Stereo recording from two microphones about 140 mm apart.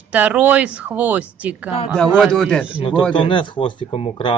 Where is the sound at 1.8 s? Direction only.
5° left (ahead or behind).